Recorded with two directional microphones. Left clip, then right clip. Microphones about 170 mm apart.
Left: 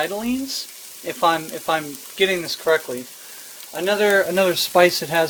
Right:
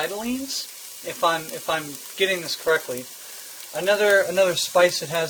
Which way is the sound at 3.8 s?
35° left (ahead or behind).